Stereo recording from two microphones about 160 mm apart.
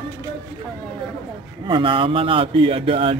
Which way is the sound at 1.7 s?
30° right (ahead or behind).